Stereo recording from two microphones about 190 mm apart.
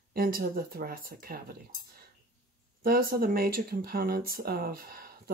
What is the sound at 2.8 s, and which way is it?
Speech, 50° right (ahead or behind).